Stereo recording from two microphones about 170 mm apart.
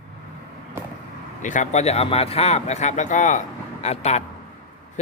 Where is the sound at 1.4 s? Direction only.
45° left (ahead or behind).